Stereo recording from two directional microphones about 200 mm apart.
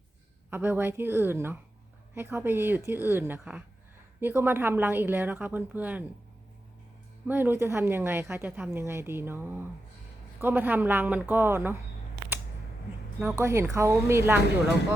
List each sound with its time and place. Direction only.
0.5 s speech: 10° right (ahead or behind)
7.3 s speech: 10° right (ahead or behind)
13.1 s speech: 10° right (ahead or behind)